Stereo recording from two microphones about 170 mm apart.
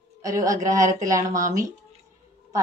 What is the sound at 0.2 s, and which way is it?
A woman's voice, 20° right (ahead or behind).